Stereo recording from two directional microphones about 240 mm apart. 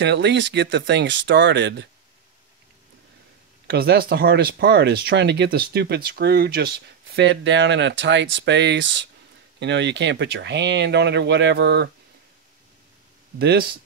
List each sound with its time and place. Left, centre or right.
0.0 s speech: right
3.6 s speech: right
13.4 s speech: right